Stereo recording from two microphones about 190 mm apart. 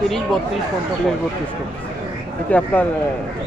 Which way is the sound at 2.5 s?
10° left (ahead or behind).